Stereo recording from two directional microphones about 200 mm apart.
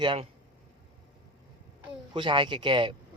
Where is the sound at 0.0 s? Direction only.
25° right (ahead or behind).